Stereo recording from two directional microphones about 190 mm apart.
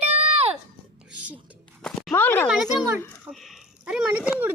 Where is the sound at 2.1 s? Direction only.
10° left (ahead or behind).